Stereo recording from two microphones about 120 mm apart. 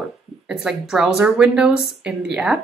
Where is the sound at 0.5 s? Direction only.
5° right (ahead or behind).